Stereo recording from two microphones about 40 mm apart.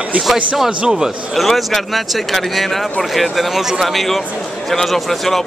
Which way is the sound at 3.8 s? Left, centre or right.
Centre.